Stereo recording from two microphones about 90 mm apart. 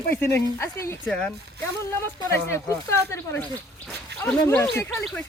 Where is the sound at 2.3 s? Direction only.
30° left (ahead or behind).